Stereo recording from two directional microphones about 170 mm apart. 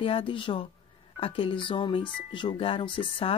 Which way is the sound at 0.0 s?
30° left (ahead or behind).